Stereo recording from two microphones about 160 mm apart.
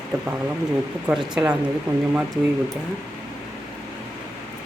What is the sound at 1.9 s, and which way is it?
Speech, 25° right (ahead or behind).